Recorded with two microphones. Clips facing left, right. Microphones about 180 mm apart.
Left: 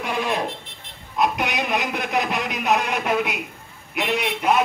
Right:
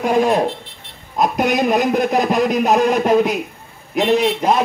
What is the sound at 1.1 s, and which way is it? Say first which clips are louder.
A man's voice: right 6 dB; 45° right (ahead or behind).